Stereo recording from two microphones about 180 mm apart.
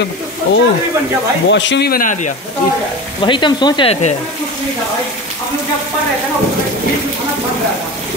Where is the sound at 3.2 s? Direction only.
25° left (ahead or behind).